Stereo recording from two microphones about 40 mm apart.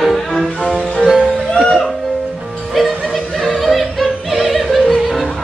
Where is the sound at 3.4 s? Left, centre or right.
Centre.